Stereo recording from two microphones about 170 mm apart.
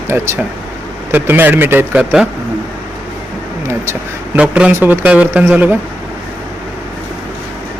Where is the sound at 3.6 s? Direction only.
10° right (ahead or behind).